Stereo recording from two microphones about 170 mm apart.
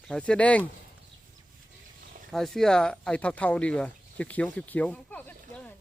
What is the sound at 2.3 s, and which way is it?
Speech, centre (ahead or behind).